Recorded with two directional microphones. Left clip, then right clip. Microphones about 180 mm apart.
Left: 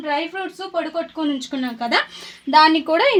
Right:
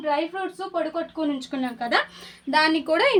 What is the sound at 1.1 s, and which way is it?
Speech, 50° left (ahead or behind).